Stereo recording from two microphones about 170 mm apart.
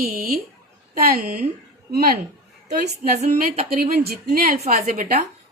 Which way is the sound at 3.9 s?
60° right (ahead or behind).